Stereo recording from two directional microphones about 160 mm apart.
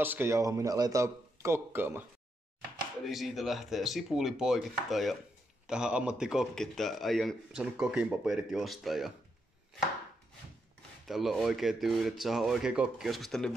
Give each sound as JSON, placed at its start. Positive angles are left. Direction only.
{"t": 0.0, "sound": "speech", "side_deg": -15}
{"t": 3.1, "sound": "speech", "side_deg": 0}
{"t": 11.1, "sound": "speech", "side_deg": 0}